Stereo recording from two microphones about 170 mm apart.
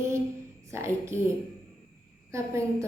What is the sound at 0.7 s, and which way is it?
Speech, 15° right (ahead or behind).